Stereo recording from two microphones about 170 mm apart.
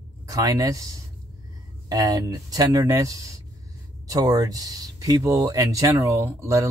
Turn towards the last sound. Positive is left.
turn(degrees=-20)  # may be behind; listen again after turning